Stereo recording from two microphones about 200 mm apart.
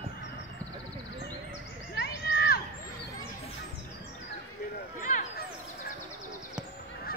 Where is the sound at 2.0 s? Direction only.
50° left (ahead or behind).